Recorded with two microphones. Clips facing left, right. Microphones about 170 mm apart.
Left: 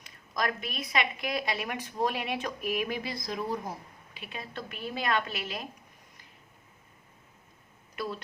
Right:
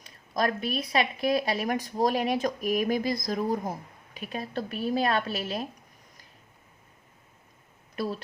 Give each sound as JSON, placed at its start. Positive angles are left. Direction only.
{"t": 0.0, "sound": "a woman's voice", "side_deg": -35}
{"t": 7.9, "sound": "speech", "side_deg": -35}